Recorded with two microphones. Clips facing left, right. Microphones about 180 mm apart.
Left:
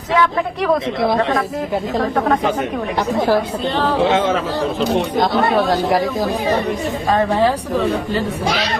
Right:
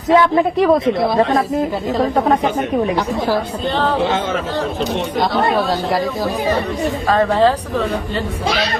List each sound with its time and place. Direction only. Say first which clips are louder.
0.1 s speech: right 5 dB; 30° right (ahead or behind)
7.1 s speech: right 2 dB; 15° left (ahead or behind)